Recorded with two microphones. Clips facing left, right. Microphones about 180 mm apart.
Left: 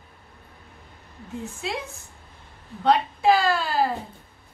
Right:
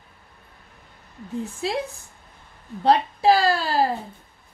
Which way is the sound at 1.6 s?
35° right (ahead or behind).